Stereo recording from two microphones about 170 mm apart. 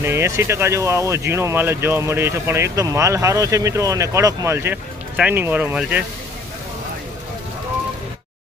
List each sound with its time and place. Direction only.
0.0 s speech: 15° right (ahead or behind)